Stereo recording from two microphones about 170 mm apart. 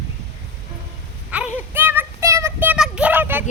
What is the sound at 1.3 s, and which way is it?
Child singing, 10° right (ahead or behind).